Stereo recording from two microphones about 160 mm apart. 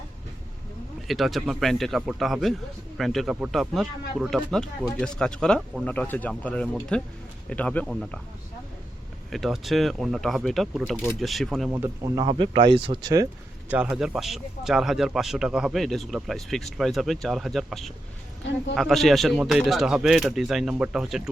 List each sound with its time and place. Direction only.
1.0 s a man's voice: centre (ahead or behind)
9.3 s a man's voice: centre (ahead or behind)
11.7 s speech: 20° right (ahead or behind)
12.3 s speech: 35° right (ahead or behind)
13.7 s a man's voice: 10° right (ahead or behind)